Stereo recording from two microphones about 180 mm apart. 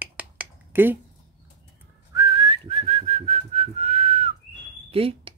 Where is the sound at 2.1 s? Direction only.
25° right (ahead or behind).